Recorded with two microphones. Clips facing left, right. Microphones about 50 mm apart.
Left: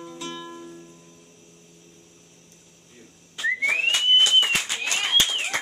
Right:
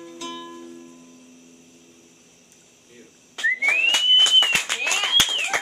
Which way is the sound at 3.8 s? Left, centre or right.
Right.